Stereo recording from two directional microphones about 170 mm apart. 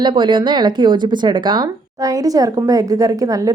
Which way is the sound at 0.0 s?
25° right (ahead or behind).